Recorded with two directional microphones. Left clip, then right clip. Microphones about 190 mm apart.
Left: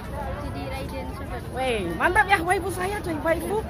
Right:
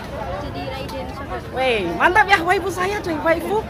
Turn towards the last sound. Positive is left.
turn(degrees=-5)  # may be behind; listen again after turning